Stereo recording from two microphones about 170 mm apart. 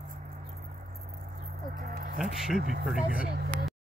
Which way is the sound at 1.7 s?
60° right (ahead or behind).